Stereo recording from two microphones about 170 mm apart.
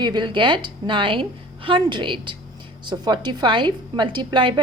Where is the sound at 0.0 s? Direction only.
25° right (ahead or behind).